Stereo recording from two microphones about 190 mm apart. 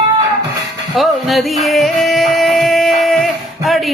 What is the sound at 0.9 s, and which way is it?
Music, centre (ahead or behind).